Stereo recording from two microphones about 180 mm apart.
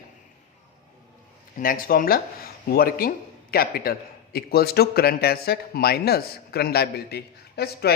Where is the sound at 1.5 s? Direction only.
50° left (ahead or behind).